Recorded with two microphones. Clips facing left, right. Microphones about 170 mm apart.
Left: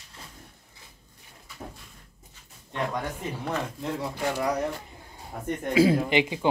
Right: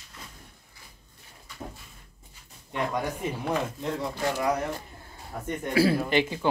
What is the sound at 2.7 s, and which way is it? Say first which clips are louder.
Speech: right 1 dB; 10° right (ahead or behind).